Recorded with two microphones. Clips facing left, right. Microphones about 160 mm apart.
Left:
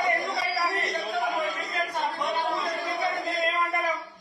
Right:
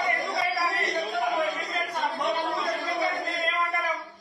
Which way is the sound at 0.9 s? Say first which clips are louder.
Right 1 dB; 20° right (ahead or behind).